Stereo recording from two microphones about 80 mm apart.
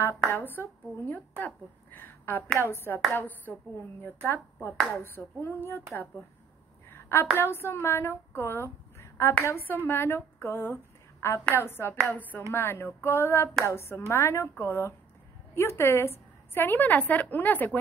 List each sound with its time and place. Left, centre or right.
0.3 s a woman's voice: left
6.9 s a sound: left
7.3 s a woman's voice: left